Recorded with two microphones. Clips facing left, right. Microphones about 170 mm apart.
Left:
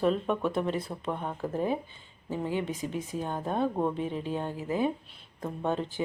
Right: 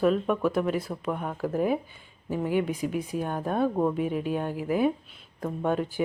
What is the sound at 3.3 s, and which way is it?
Speech, 20° left (ahead or behind).